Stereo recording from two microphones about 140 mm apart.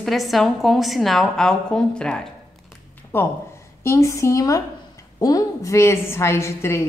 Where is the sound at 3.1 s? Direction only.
15° left (ahead or behind).